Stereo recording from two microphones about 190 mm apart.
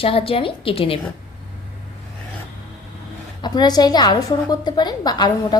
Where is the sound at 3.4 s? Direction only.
20° left (ahead or behind).